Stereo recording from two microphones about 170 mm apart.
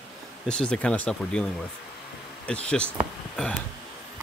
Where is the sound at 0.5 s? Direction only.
5° left (ahead or behind).